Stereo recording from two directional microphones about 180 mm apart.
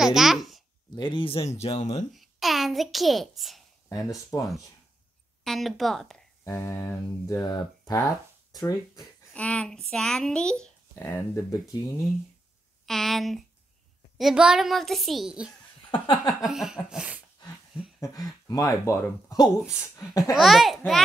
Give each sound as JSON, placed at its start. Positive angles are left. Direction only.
{"t": 0.0, "sound": "babbling", "side_deg": 0}
{"t": 0.9, "sound": "speech", "side_deg": 25}
{"t": 2.1, "sound": "a child's voice", "side_deg": 0}
{"t": 3.9, "sound": "speech", "side_deg": 20}
{"t": 5.4, "sound": "speech", "side_deg": 0}
{"t": 6.4, "sound": "speech", "side_deg": 10}
{"t": 9.3, "sound": "speech", "side_deg": 5}
{"t": 12.8, "sound": "speech", "side_deg": 0}
{"t": 15.9, "sound": "speech", "side_deg": 25}
{"t": 16.4, "sound": "speech", "side_deg": 0}
{"t": 18.0, "sound": "speech", "side_deg": 20}
{"t": 20.3, "sound": "speech", "side_deg": 0}